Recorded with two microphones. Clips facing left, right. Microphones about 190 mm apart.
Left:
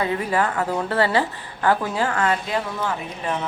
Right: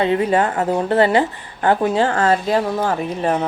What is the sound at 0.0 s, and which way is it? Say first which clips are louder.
A woman's voice: right 6 dB; 25° right (ahead or behind).